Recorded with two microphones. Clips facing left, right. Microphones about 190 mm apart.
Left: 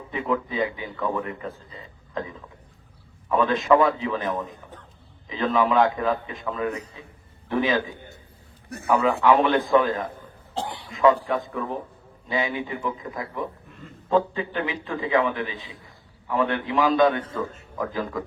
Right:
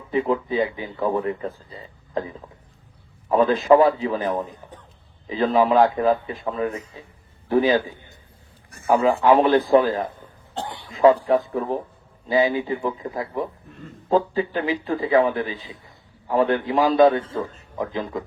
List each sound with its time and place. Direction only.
0.1 s speech: 30° right (ahead or behind)
9.2 s speech: 35° right (ahead or behind)
10.5 s cough: centre (ahead or behind)
10.9 s speech: 35° right (ahead or behind)